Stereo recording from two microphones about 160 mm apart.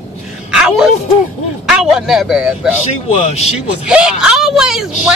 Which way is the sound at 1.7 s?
5° right (ahead or behind).